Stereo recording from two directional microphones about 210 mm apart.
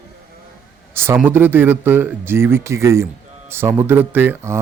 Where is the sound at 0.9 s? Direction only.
10° right (ahead or behind).